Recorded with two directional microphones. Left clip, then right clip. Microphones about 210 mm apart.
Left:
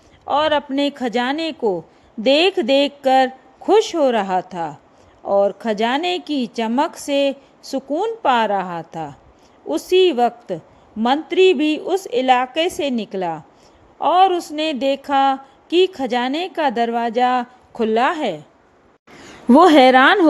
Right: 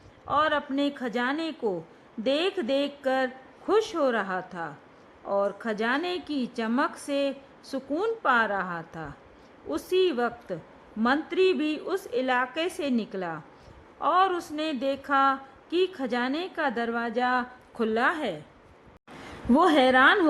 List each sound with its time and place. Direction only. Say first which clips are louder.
0.3 s a woman's voice: left 8 dB; 25° left (ahead or behind)
19.5 s speech: left 10 dB; 30° left (ahead or behind)